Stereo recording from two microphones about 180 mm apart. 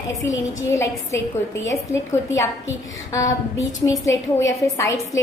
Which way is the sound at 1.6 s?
15° left (ahead or behind).